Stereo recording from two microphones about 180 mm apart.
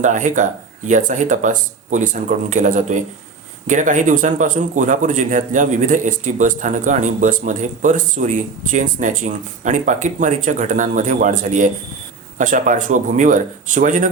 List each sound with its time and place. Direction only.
0.0 s a man's voice: 45° right (ahead or behind)